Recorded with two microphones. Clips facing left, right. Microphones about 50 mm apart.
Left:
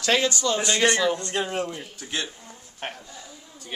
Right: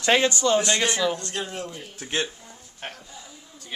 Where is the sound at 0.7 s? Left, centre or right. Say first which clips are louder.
Left 2 dB; centre.